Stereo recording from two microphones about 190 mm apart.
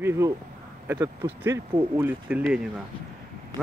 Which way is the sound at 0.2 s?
15° right (ahead or behind).